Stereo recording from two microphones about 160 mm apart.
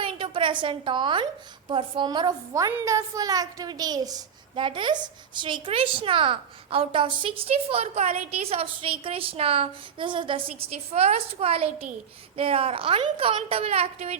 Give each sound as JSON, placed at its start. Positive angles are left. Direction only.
{"t": 0.0, "sound": "a woman's voice", "side_deg": -30}